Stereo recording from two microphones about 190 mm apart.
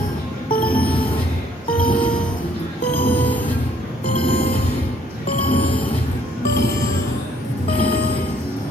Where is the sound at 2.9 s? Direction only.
10° left (ahead or behind).